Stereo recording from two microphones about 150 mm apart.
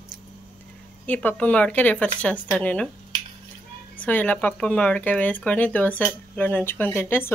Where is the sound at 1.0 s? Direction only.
10° left (ahead or behind).